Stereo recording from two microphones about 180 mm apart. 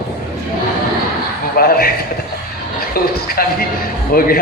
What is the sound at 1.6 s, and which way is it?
A man's voice, 55° left (ahead or behind).